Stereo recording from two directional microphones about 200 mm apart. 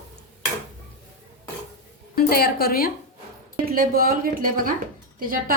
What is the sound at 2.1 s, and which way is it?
Speech, 50° left (ahead or behind).